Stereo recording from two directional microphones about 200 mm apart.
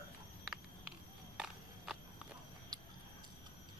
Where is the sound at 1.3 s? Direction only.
Centre (ahead or behind).